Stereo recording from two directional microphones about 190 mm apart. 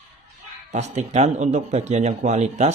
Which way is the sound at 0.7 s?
35° right (ahead or behind).